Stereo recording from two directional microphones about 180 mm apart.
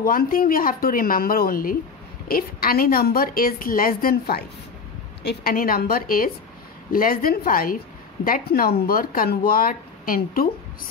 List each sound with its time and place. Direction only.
0.0 s a woman's voice: 55° left (ahead or behind)